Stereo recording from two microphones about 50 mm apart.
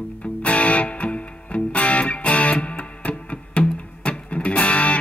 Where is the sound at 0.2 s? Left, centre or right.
Left.